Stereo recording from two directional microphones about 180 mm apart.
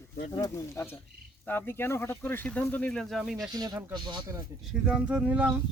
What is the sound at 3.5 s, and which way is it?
Speech, 20° right (ahead or behind).